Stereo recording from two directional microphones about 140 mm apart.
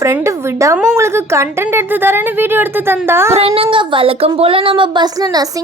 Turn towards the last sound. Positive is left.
turn(degrees=-30)  # may be behind; listen again after turning